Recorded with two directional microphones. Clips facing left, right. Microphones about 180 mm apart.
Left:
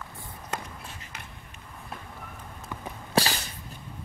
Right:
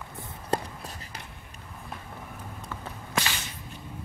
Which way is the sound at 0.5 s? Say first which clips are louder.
Right 7 dB; 35° right (ahead or behind).